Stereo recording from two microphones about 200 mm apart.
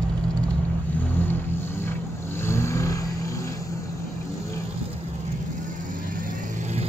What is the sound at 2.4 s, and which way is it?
Vehicle, 15° left (ahead or behind).